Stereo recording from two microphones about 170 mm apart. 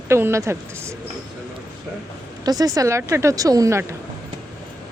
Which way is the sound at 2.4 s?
20° right (ahead or behind).